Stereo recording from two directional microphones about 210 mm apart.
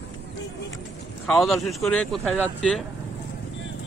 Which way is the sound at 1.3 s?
Centre (ahead or behind).